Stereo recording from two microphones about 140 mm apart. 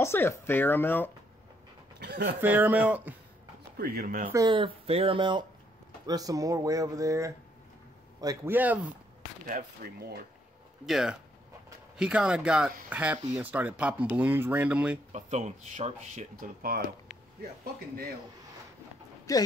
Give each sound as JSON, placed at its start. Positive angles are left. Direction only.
{"t": 0.0, "sound": "speech", "side_deg": 15}
{"t": 2.4, "sound": "speech", "side_deg": -10}
{"t": 3.7, "sound": "speech", "side_deg": -90}
{"t": 4.3, "sound": "speech", "side_deg": -25}
{"t": 4.6, "sound": "speech", "side_deg": -45}
{"t": 6.0, "sound": "speech", "side_deg": -25}
{"t": 8.5, "sound": "speech", "side_deg": -10}
{"t": 9.5, "sound": "speech", "side_deg": -85}
{"t": 10.9, "sound": "speech", "side_deg": -5}
{"t": 15.1, "sound": "speech", "side_deg": -55}
{"t": 16.3, "sound": "speech", "side_deg": -90}
{"t": 19.3, "sound": "speech", "side_deg": 25}